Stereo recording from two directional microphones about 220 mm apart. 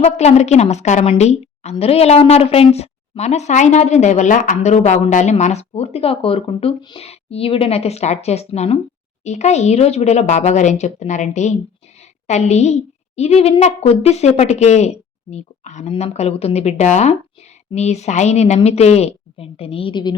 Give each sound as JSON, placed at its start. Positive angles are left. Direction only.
{"t": 0.0, "sound": "a woman's voice", "side_deg": 30}